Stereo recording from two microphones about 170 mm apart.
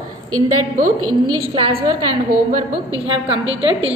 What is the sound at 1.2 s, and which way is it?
Speech, 30° right (ahead or behind).